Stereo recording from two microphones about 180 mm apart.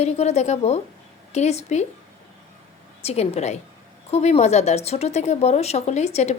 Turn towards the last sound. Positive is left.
turn(degrees=35)  # may be behind; listen again after turning